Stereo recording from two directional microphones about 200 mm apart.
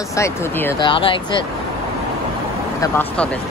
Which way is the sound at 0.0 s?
15° left (ahead or behind).